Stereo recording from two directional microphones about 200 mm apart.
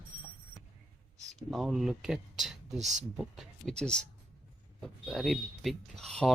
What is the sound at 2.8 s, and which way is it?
Speech, 35° right (ahead or behind).